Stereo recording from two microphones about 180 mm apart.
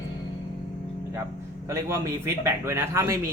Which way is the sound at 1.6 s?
15° right (ahead or behind).